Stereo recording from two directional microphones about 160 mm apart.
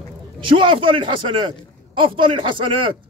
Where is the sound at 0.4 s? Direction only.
30° right (ahead or behind).